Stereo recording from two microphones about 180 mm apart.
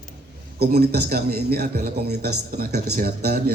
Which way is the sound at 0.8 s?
60° right (ahead or behind).